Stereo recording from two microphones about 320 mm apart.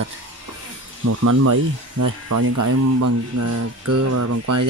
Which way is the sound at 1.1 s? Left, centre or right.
Right.